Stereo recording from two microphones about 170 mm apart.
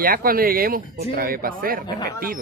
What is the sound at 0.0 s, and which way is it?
Speech, 60° right (ahead or behind).